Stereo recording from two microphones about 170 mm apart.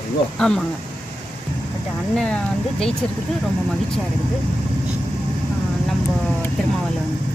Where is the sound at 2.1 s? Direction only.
5° left (ahead or behind).